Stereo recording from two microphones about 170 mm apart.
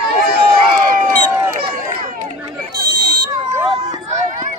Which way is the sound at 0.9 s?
55° right (ahead or behind).